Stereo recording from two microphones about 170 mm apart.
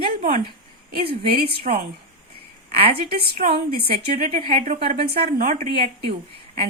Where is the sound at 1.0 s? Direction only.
35° right (ahead or behind).